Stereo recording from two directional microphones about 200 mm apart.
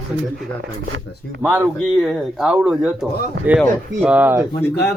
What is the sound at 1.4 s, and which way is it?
Speech, 10° right (ahead or behind).